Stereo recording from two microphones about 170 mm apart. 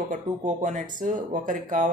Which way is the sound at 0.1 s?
45° right (ahead or behind).